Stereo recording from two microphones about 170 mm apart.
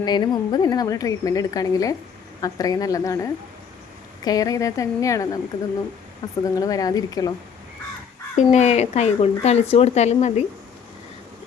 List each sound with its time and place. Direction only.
0.0 s a woman's voice: 25° left (ahead or behind)
6.4 s a woman's voice: 20° left (ahead or behind)
8.4 s speech: 40° left (ahead or behind)